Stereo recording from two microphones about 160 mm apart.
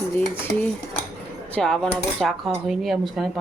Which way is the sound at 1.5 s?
5° left (ahead or behind).